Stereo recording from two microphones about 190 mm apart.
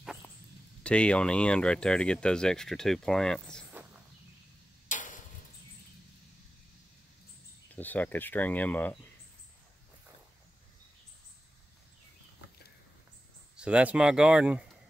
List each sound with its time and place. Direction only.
0.0 s a sound: 5° right (ahead or behind)
0.8 s speech: 5° left (ahead or behind)
4.8 s tick-tock: 40° left (ahead or behind)
7.7 s speech: 10° left (ahead or behind)
13.6 s speech: 5° right (ahead or behind)